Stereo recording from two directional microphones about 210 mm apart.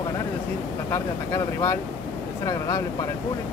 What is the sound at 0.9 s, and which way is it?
Speech, 15° left (ahead or behind).